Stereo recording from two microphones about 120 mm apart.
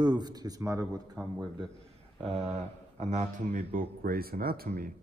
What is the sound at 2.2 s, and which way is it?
Speech, 60° right (ahead or behind).